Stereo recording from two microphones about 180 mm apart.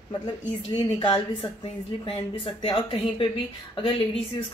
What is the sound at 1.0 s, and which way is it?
Speech, 30° left (ahead or behind).